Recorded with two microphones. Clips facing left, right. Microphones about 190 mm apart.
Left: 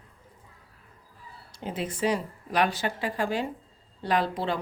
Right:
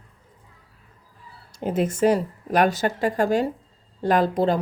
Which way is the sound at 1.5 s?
45° right (ahead or behind).